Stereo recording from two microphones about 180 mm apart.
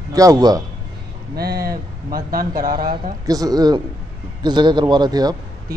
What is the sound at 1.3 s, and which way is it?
Speech, 60° right (ahead or behind).